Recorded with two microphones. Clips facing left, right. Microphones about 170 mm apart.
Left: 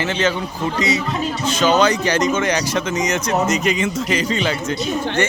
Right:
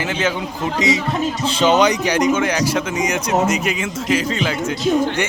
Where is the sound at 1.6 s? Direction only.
20° right (ahead or behind).